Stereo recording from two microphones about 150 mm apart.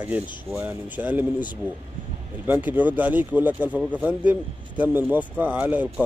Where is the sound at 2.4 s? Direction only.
10° right (ahead or behind).